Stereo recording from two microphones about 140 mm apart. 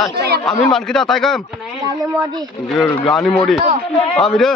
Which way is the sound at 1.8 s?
30° right (ahead or behind).